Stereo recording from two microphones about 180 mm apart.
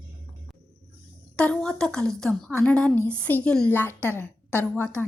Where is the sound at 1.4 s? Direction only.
5° left (ahead or behind).